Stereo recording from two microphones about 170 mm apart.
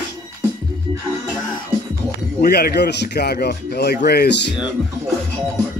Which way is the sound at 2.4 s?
65° left (ahead or behind).